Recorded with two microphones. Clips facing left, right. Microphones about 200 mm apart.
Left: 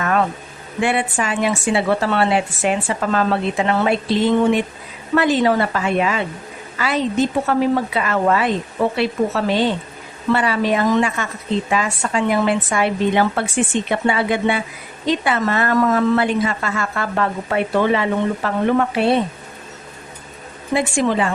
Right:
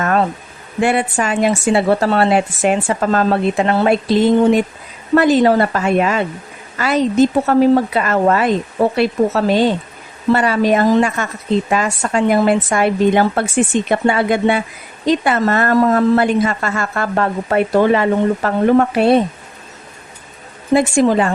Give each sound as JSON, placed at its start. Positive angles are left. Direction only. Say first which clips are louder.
{"t": 0.0, "sound": "a sound", "louder": "right 3 dB", "side_deg": -40}
{"t": 0.8, "sound": "a woman's voice", "louder": "right 4 dB", "side_deg": -45}
{"t": 20.7, "sound": "a woman's voice", "louder": "right 5 dB", "side_deg": -40}